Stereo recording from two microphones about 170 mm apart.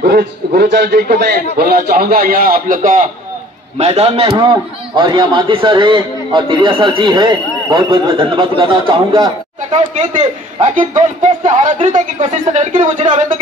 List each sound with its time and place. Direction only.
0.0 s a man's voice: 65° right (ahead or behind)
3.7 s a man's voice: 40° right (ahead or behind)
4.4 s a man's voice: 25° right (ahead or behind)
9.6 s speech: 45° right (ahead or behind)